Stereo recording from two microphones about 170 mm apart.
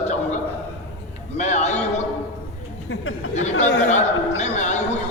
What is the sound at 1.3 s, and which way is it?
Speech, 45° left (ahead or behind).